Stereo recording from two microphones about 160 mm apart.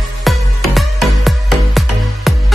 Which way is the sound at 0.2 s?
Centre (ahead or behind).